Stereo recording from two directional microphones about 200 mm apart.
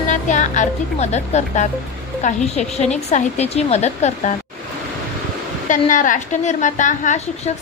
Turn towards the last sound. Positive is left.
turn(degrees=40)  # may be behind; listen again after turning